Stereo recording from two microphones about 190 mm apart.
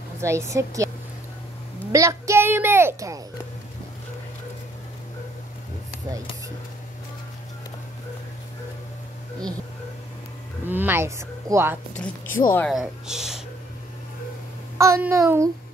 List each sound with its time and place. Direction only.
0.2 s a woman's voice: 15° right (ahead or behind)
1.9 s a woman's voice: 15° right (ahead or behind)
10.7 s a woman's voice: 10° right (ahead or behind)
12.0 s a woman's voice: 10° left (ahead or behind)
12.7 s speech: 5° right (ahead or behind)
14.8 s a woman's voice: 15° right (ahead or behind)